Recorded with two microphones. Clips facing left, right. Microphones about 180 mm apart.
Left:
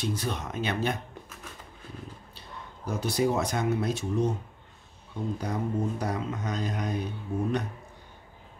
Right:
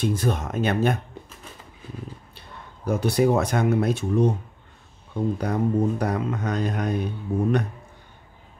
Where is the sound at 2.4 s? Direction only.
60° right (ahead or behind).